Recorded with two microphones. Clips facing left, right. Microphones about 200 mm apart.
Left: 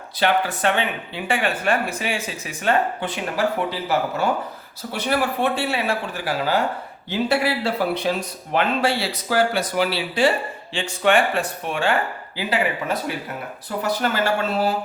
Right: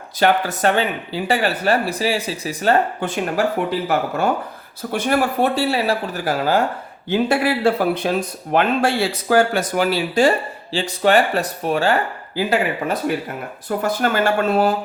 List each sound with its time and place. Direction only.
0.2 s speech: 45° right (ahead or behind)
4.9 s speech: 50° right (ahead or behind)